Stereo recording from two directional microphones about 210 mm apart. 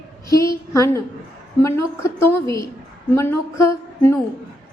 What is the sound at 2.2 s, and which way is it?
A woman's voice, 15° left (ahead or behind).